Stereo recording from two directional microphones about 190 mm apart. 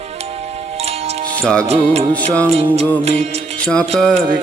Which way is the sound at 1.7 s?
35° right (ahead or behind).